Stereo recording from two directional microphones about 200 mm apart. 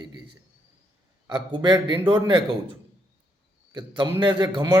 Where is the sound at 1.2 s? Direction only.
20° right (ahead or behind).